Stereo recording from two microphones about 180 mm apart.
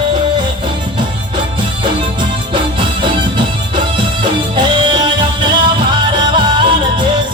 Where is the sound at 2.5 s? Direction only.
25° right (ahead or behind).